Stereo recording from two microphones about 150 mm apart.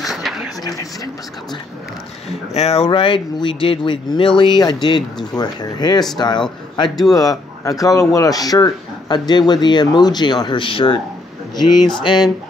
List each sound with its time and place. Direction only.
0.0 s a sound: centre (ahead or behind)
0.7 s speech: 25° left (ahead or behind)
2.2 s speech: 45° left (ahead or behind)
12.0 s speech: 30° left (ahead or behind)